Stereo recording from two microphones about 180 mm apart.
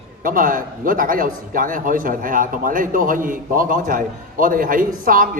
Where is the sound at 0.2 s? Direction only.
50° right (ahead or behind).